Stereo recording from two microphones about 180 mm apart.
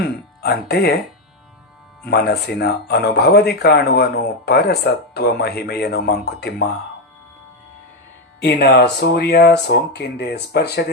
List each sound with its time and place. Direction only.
0.0 s speech: 60° left (ahead or behind)
2.0 s speech: 60° left (ahead or behind)
8.6 s speech: 65° left (ahead or behind)